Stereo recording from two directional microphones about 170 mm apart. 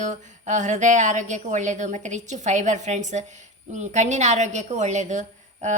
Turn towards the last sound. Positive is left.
turn(degrees=-45)  # may be behind; listen again after turning